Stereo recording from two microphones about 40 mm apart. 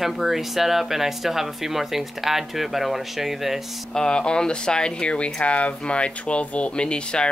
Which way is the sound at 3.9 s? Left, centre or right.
Left.